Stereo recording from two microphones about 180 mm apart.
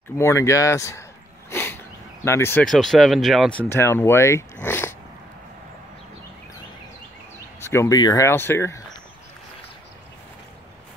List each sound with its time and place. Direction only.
0.2 s speech: 15° left (ahead or behind)
1.5 s a sound: 15° left (ahead or behind)
2.2 s speech: 15° left (ahead or behind)
2.6 s speech: centre (ahead or behind)
7.6 s speech: 15° left (ahead or behind)